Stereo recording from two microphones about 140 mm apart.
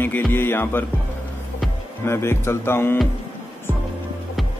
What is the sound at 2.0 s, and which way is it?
Speech, 20° left (ahead or behind).